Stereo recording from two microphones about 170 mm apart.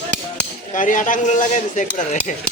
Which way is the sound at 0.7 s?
50° left (ahead or behind).